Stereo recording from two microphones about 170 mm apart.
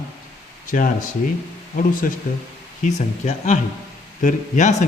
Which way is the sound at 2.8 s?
45° left (ahead or behind).